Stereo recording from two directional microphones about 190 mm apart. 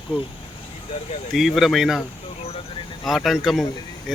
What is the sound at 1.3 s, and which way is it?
Speech, centre (ahead or behind).